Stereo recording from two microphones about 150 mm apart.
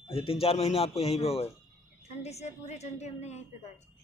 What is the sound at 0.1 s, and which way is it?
A man's voice, 40° left (ahead or behind).